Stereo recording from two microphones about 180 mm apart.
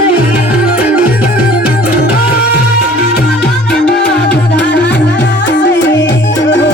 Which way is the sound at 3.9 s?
65° left (ahead or behind).